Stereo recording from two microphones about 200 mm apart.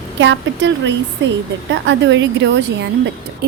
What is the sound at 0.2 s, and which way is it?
A woman's voice, 65° right (ahead or behind).